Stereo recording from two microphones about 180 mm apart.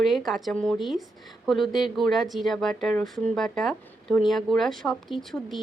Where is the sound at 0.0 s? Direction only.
Centre (ahead or behind).